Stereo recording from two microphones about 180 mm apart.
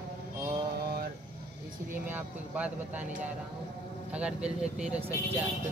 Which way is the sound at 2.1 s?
10° right (ahead or behind).